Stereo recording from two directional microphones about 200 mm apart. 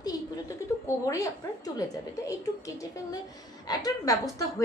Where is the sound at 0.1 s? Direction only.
20° left (ahead or behind).